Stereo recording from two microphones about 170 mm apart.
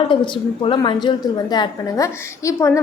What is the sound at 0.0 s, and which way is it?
A woman's voice, 30° left (ahead or behind).